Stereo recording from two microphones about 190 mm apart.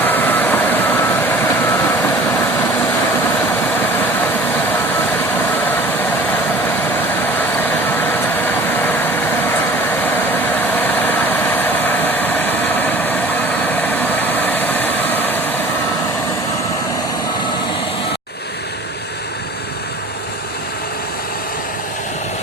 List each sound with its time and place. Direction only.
0.0 s vehicle: 10° left (ahead or behind)
3.5 s vehicle: 10° left (ahead or behind)